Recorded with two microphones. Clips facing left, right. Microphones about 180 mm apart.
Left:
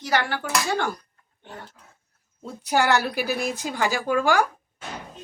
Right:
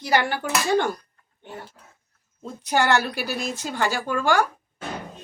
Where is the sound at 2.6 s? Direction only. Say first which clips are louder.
Even; 10° left (ahead or behind).